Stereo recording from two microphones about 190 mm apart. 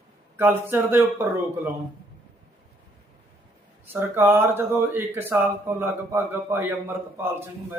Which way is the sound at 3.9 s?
10° right (ahead or behind).